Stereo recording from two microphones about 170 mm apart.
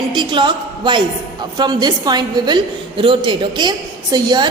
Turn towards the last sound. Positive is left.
turn(degrees=-25)  # may be behind; listen again after turning